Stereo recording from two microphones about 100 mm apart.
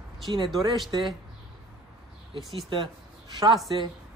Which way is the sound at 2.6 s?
55° right (ahead or behind).